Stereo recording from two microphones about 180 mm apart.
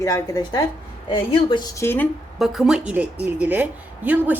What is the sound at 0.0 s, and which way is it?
Speech, 20° left (ahead or behind).